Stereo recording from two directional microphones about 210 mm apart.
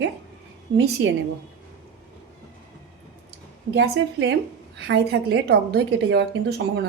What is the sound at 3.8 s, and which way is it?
A woman's voice, 55° right (ahead or behind).